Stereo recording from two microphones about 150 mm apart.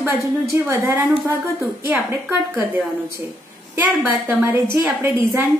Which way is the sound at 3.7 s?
15° right (ahead or behind).